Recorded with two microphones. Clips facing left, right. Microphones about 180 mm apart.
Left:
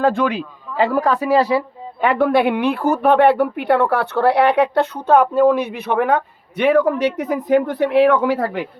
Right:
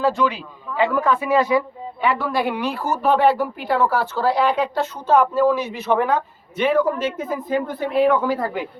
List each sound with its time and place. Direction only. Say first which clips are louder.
0.0 s a man's voice: left 3 dB; 55° left (ahead or behind)
0.8 s speech: left 2 dB; 40° left (ahead or behind)
2.0 s speech: left 6 dB; 55° left (ahead or behind); by 8.4 s 80° left